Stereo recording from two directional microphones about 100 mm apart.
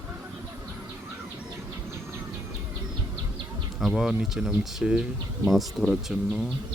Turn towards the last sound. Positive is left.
turn(degrees=-5)  # may be behind; listen again after turning